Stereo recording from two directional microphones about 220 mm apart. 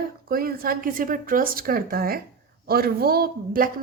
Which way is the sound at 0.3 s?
40° right (ahead or behind).